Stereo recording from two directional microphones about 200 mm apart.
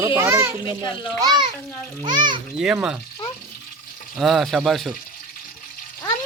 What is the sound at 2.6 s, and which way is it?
Frying, 5° right (ahead or behind).